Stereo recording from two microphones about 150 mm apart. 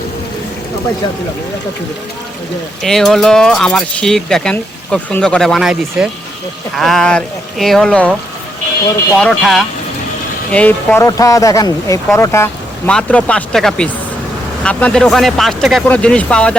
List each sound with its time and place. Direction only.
2.8 s speech: 5° left (ahead or behind)
9.1 s speech: 5° left (ahead or behind)
11.0 s speech: 20° left (ahead or behind)
12.9 s speech: 5° left (ahead or behind)